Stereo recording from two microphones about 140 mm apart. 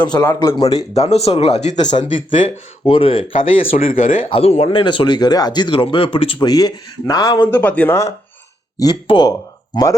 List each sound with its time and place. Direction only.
0.0 s speech: 30° left (ahead or behind); by 2.0 s 60° left (ahead or behind)
2.1 s speech: 40° left (ahead or behind)
7.4 s speech: 10° left (ahead or behind)
8.8 s speech: 30° left (ahead or behind)